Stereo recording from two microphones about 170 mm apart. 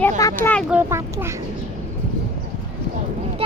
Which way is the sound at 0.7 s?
15° right (ahead or behind).